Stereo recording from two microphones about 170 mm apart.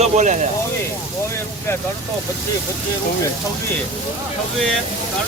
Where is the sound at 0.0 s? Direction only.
45° right (ahead or behind).